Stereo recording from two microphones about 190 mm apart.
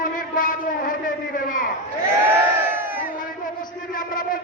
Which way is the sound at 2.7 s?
10° right (ahead or behind).